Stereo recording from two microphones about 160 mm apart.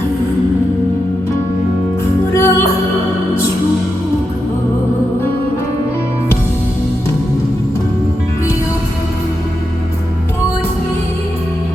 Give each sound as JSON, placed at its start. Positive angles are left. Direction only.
{"t": 2.3, "sound": "music", "side_deg": 15}